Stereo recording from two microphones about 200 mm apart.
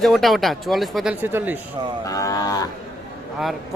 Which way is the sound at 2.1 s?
15° left (ahead or behind).